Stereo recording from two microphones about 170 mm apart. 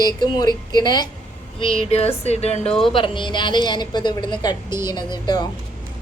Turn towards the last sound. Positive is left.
turn(degrees=25)  # may be behind; listen again after turning